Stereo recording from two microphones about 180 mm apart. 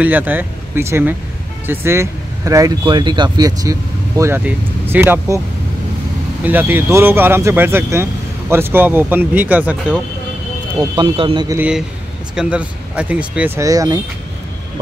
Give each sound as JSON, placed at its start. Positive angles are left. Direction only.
{"t": 0.0, "sound": "speech", "side_deg": -10}
{"t": 6.4, "sound": "speech", "side_deg": -10}
{"t": 11.0, "sound": "speech", "side_deg": -30}
{"t": 11.5, "sound": "speech", "side_deg": -5}
{"t": 13.7, "sound": "speech", "side_deg": -20}